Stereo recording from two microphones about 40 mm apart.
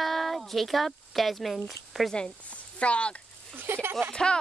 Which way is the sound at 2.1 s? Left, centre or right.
Centre.